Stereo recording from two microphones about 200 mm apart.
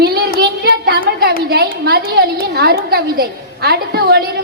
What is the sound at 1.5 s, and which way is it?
A woman's voice, 50° right (ahead or behind).